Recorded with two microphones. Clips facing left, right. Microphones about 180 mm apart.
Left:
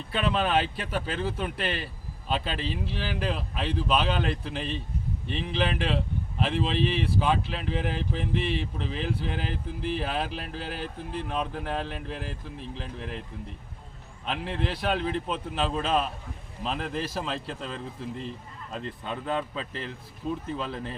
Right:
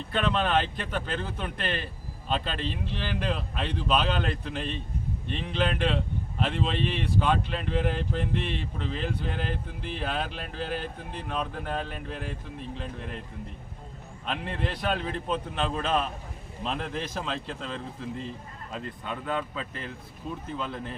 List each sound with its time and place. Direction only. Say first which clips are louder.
0.1 s speech: even; 5° left (ahead or behind)
14.3 s speech: left 1 dB; centre (ahead or behind)
19.0 s a man's voice: left 1 dB; 30° left (ahead or behind)
20.2 s speech: left 5 dB; 5° right (ahead or behind)